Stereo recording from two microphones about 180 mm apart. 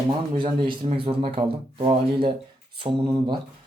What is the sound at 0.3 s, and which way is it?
Speech, 25° right (ahead or behind).